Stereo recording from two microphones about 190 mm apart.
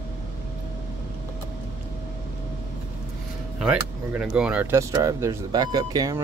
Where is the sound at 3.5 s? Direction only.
5° right (ahead or behind).